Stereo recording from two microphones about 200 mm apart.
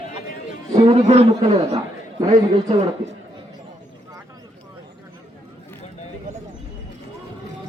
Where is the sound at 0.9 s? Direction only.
30° right (ahead or behind).